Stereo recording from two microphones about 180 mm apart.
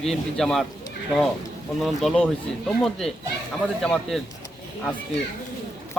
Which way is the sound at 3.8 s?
Centre (ahead or behind).